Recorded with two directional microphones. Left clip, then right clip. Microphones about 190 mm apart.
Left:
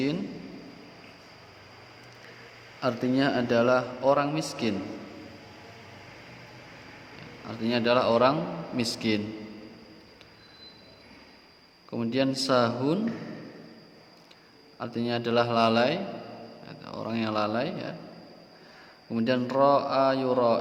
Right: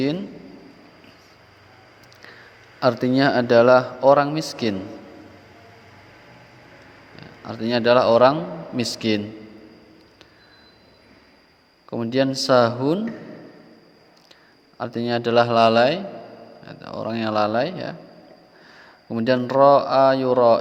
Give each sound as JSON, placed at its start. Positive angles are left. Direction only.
{"t": 2.8, "sound": "a man's voice", "side_deg": -35}
{"t": 7.2, "sound": "a man's voice", "side_deg": -30}
{"t": 11.9, "sound": "speech", "side_deg": -30}
{"t": 14.8, "sound": "a man's voice", "side_deg": -30}
{"t": 19.1, "sound": "a man's voice", "side_deg": -30}